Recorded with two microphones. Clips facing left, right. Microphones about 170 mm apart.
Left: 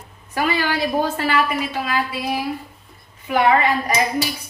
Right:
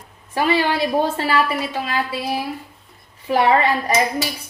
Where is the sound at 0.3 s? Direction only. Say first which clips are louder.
Right 3 dB; 30° right (ahead or behind).